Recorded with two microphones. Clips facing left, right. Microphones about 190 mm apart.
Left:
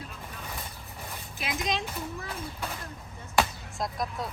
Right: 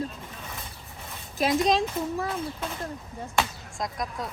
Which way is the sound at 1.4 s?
35° right (ahead or behind).